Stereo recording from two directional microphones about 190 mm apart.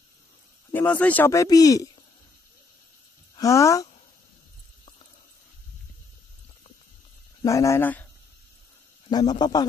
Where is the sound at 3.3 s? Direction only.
15° left (ahead or behind).